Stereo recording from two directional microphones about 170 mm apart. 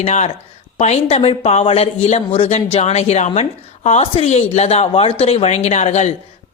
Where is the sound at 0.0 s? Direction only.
40° left (ahead or behind).